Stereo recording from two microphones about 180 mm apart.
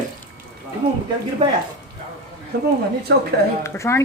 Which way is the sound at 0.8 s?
30° right (ahead or behind).